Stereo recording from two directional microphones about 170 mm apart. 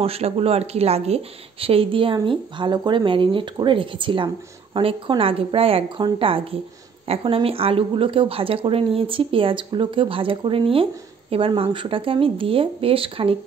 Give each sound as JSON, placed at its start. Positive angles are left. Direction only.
{"t": 0.0, "sound": "speech", "side_deg": -35}